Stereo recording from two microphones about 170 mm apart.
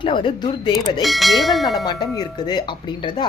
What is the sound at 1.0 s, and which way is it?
Speech, centre (ahead or behind).